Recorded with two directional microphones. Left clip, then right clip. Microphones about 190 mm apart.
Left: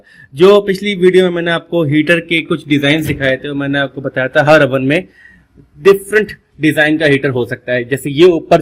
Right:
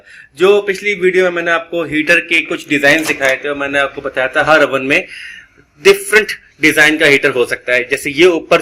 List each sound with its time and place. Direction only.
0.3 s a man's voice: 45° left (ahead or behind)
5.8 s a man's voice: 20° left (ahead or behind)